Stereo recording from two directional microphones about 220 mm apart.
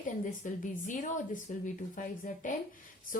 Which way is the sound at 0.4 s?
35° left (ahead or behind).